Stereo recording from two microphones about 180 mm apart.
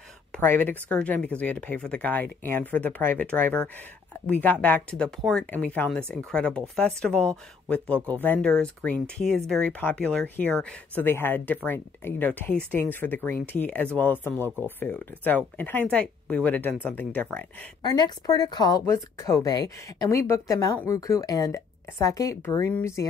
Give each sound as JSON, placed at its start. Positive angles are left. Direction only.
{"t": 0.3, "sound": "speech", "side_deg": 10}
{"t": 14.4, "sound": "speech", "side_deg": -15}
{"t": 14.8, "sound": "speech", "side_deg": 10}
{"t": 17.8, "sound": "a woman's voice", "side_deg": 25}